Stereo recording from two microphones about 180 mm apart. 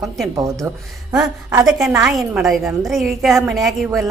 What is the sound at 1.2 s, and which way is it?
Speech, 20° right (ahead or behind).